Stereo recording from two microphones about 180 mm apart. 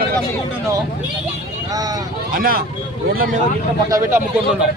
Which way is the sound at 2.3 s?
55° right (ahead or behind).